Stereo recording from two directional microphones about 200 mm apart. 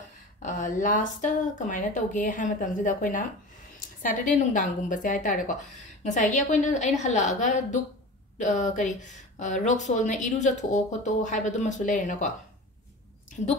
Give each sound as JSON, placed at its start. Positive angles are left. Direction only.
{"t": 0.4, "sound": "speech", "side_deg": 40}